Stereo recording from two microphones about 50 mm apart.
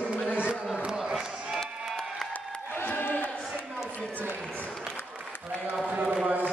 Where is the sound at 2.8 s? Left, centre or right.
Left.